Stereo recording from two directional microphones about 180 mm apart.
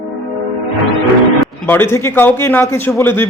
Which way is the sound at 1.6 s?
10° left (ahead or behind).